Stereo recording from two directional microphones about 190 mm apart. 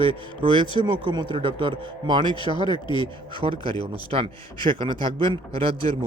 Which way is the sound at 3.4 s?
25° right (ahead or behind).